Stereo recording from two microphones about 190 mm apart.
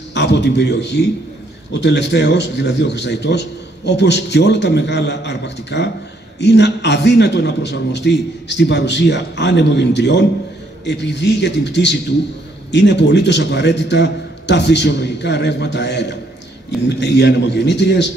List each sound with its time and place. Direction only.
0.1 s a man's voice: 65° left (ahead or behind)